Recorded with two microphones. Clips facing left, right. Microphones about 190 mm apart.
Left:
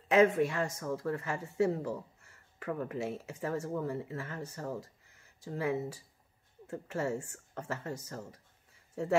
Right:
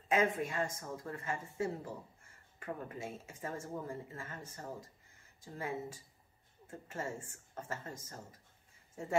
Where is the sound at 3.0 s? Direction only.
70° left (ahead or behind).